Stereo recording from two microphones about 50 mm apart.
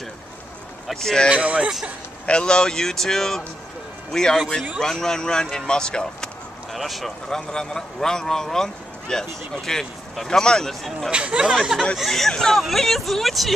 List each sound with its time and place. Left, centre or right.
0.9 s speech: centre
1.3 s speech: right
2.2 s speech: centre
6.7 s speech: centre
7.2 s speech: centre
10.7 s speech: centre
11.1 s speech: right
12.0 s speech: centre